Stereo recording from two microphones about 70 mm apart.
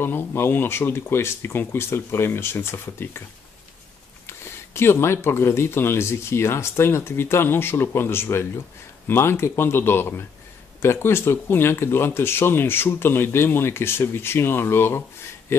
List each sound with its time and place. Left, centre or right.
0.0 s speech: left
4.3 s speech: left